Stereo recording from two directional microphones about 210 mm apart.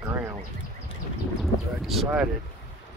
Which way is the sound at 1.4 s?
Centre (ahead or behind).